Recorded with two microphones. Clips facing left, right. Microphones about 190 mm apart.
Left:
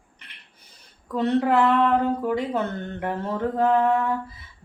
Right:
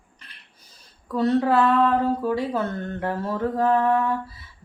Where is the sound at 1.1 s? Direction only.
20° left (ahead or behind).